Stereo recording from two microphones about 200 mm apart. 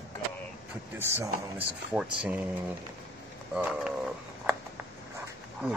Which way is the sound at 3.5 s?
5° right (ahead or behind).